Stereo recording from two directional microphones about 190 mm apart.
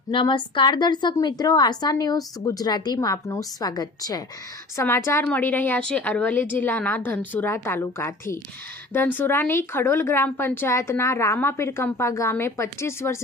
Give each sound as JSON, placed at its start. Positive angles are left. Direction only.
{"t": 0.1, "sound": "a woman's voice", "side_deg": 25}